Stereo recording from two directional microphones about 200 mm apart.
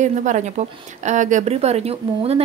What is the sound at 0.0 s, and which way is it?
Speech, 35° right (ahead or behind).